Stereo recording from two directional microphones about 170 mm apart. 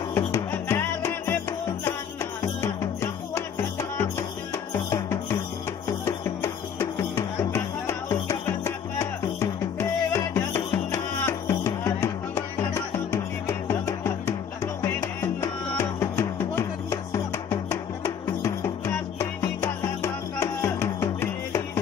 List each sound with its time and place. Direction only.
0.1 s music: 15° left (ahead or behind)
2.6 s music: 15° left (ahead or behind)
4.8 s music: 15° left (ahead or behind)